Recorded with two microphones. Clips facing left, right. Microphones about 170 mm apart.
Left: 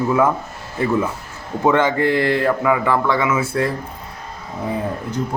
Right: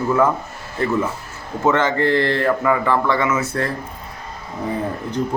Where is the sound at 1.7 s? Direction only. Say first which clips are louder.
Left 1 dB; 15° left (ahead or behind).